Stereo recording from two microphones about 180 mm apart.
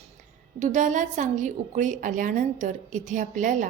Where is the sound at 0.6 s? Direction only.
45° right (ahead or behind).